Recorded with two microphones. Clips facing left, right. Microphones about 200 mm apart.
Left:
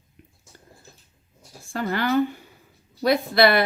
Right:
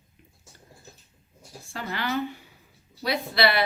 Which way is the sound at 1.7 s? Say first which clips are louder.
Left 7 dB; 50° left (ahead or behind).